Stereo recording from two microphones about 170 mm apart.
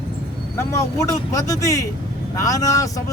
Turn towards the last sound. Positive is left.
turn(degrees=20)  # may be behind; listen again after turning